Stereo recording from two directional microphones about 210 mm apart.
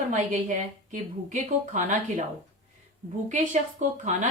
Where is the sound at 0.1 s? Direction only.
35° right (ahead or behind).